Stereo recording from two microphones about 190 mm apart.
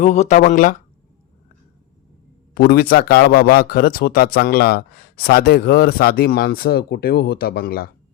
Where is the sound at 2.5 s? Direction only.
55° left (ahead or behind).